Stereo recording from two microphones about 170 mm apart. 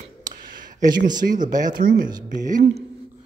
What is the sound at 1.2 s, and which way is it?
Speech, 50° right (ahead or behind).